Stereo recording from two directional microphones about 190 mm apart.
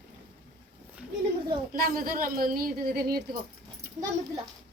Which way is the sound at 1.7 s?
50° right (ahead or behind).